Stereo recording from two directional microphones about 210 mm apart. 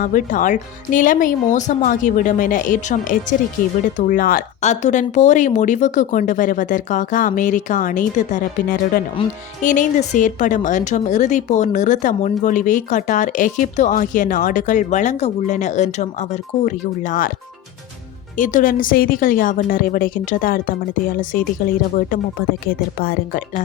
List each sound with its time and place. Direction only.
0.0 s a woman's voice: 40° left (ahead or behind)
18.3 s a woman's voice: 40° left (ahead or behind)
21.9 s speech: 45° left (ahead or behind)